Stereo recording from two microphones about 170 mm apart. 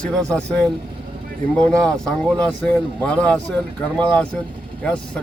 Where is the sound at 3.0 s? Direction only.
5° left (ahead or behind).